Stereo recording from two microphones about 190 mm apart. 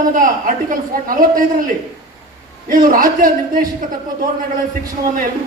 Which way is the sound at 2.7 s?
45° right (ahead or behind).